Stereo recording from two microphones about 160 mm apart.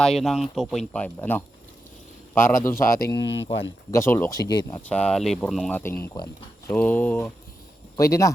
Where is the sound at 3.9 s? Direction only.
15° left (ahead or behind).